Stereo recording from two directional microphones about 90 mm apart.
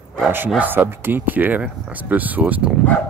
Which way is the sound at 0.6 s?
20° right (ahead or behind).